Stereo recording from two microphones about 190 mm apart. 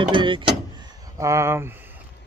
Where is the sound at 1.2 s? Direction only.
15° right (ahead or behind).